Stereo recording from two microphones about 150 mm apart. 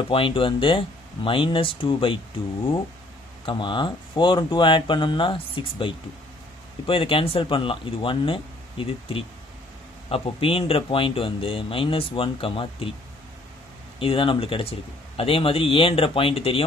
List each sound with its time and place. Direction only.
0.1 s speech: 35° left (ahead or behind)
3.4 s speech: 30° left (ahead or behind)
13.9 s speech: 35° left (ahead or behind)